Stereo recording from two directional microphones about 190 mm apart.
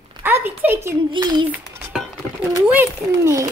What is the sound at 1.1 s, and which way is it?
Speech, 25° right (ahead or behind).